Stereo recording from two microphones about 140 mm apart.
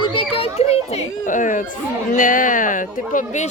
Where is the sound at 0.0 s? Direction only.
35° left (ahead or behind).